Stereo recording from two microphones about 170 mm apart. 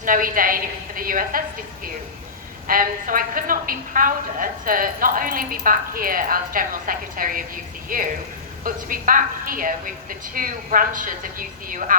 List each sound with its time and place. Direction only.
0.0 s a woman's voice: 55° right (ahead or behind)
2.6 s a woman's voice: 55° right (ahead or behind)